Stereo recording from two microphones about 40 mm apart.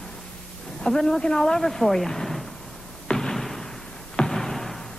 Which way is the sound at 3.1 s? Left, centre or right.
Centre.